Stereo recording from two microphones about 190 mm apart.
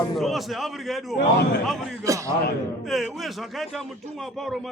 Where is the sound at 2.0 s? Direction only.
15° right (ahead or behind).